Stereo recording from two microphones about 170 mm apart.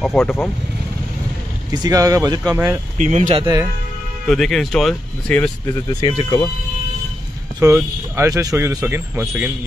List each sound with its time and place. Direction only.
0.0 s speech: 5° left (ahead or behind)
1.7 s speech: 20° right (ahead or behind)
3.0 s speech: 45° right (ahead or behind)
4.3 s speech: centre (ahead or behind)
5.9 s speech: 30° left (ahead or behind)
7.6 s speech: 15° right (ahead or behind)